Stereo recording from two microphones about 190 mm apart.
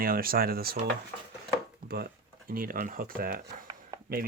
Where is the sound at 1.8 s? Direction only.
55° right (ahead or behind).